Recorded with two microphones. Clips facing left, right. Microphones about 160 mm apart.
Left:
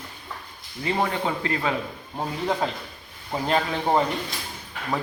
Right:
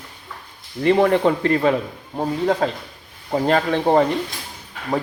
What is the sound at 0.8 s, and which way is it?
Speech, 65° right (ahead or behind).